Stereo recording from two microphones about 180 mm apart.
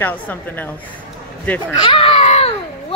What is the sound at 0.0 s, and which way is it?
Speech, 10° left (ahead or behind).